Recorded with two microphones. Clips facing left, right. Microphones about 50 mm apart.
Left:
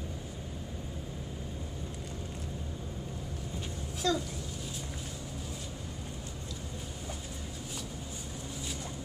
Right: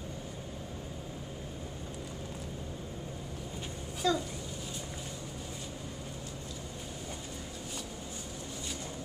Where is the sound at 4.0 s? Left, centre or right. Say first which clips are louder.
Right 1 dB; centre.